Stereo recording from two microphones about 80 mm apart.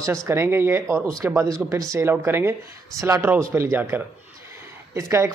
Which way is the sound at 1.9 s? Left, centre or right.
Right.